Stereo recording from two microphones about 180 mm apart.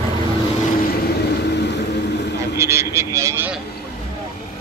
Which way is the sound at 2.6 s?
15° right (ahead or behind).